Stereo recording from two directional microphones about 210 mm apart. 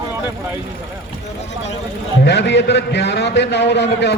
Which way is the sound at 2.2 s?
55° left (ahead or behind).